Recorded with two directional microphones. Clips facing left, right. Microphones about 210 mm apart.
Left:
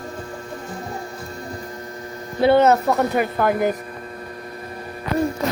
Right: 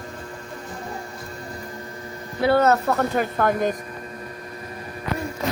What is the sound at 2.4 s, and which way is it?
Speech, 25° left (ahead or behind).